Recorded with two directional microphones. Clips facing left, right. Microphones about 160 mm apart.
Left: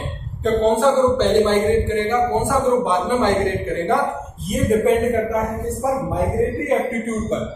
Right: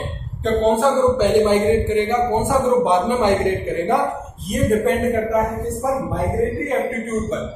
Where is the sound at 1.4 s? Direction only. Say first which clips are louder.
Right 1 dB; 15° right (ahead or behind).